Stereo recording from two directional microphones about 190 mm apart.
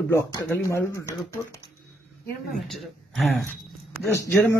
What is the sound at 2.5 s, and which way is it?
Speech, centre (ahead or behind).